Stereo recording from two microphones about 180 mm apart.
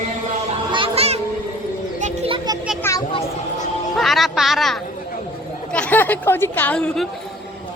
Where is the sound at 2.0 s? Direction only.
35° right (ahead or behind).